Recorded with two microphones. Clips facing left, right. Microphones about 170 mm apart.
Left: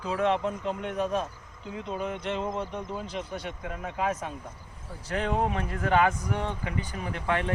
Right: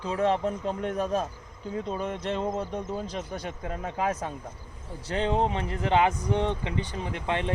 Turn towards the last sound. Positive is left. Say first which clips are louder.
# even
turn(degrees=-20)  # may be behind; listen again after turning